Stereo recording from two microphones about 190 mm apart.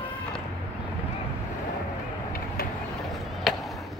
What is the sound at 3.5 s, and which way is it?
Skateboard, centre (ahead or behind).